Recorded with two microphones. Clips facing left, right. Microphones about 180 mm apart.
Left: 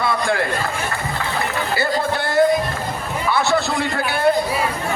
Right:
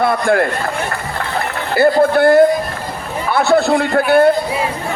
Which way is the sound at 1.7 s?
55° right (ahead or behind).